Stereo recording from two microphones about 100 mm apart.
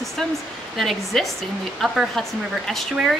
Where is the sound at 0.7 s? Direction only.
Centre (ahead or behind).